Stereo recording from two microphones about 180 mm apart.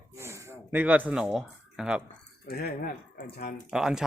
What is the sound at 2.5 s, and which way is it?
Speech, 55° left (ahead or behind).